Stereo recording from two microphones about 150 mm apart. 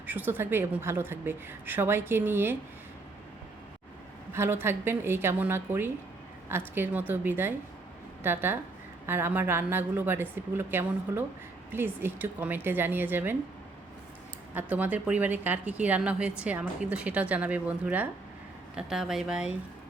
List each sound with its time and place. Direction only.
0.0 s a woman's voice: 10° right (ahead or behind)
4.3 s a woman's voice: 15° right (ahead or behind)
14.5 s a woman's voice: 10° right (ahead or behind)